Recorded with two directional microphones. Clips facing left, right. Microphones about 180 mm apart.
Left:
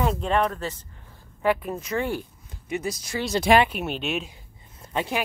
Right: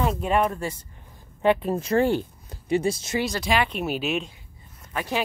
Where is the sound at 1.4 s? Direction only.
25° right (ahead or behind).